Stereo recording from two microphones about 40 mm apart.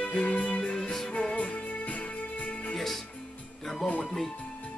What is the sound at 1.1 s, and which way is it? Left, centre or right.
Music, left.